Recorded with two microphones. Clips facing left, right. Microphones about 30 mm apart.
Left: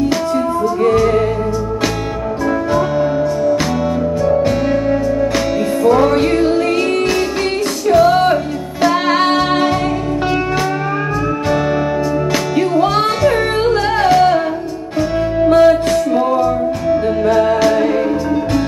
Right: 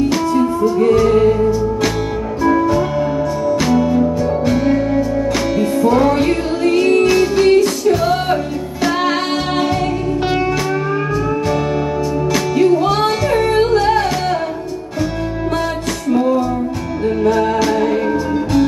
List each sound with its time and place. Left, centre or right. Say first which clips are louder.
5.9 s music: left 3 dB; centre
9.0 s music: left 4 dB; left
12.5 s music: right 1 dB; left
15.0 s music: left 6 dB; centre